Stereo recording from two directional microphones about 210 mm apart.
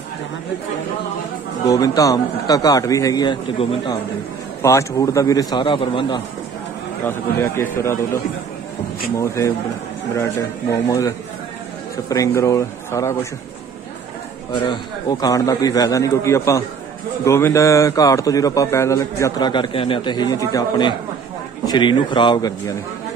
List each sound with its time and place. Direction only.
1.7 s a man's voice: 15° left (ahead or behind)
7.1 s a man's voice: 10° left (ahead or behind)
10.7 s a man's voice: 15° left (ahead or behind)
14.5 s a man's voice: 20° left (ahead or behind)